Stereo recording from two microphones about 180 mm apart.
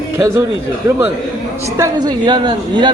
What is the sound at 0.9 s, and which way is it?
Speech, 15° right (ahead or behind).